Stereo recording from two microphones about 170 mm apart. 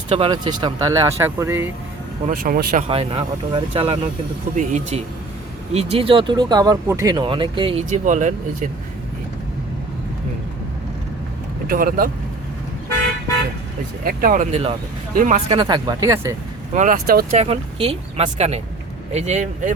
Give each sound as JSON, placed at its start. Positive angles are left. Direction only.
{"t": 0.1, "sound": "speech", "side_deg": -30}
{"t": 2.2, "sound": "speech", "side_deg": -55}
{"t": 2.8, "sound": "speech", "side_deg": -35}
{"t": 4.5, "sound": "speech", "side_deg": -45}
{"t": 7.9, "sound": "speech", "side_deg": -45}
{"t": 11.7, "sound": "speech", "side_deg": -60}
{"t": 14.0, "sound": "speech", "side_deg": -55}
{"t": 14.5, "sound": "speech", "side_deg": -35}
{"t": 15.1, "sound": "speech", "side_deg": -55}
{"t": 15.4, "sound": "speech", "side_deg": -25}
{"t": 16.7, "sound": "speech", "side_deg": -50}
{"t": 17.3, "sound": "speech", "side_deg": -35}